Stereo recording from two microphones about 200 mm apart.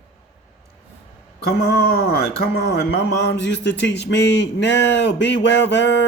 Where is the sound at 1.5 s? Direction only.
50° left (ahead or behind).